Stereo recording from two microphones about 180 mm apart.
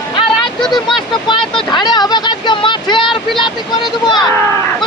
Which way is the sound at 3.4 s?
25° left (ahead or behind).